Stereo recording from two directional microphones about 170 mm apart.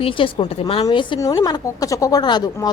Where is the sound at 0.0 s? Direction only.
30° left (ahead or behind).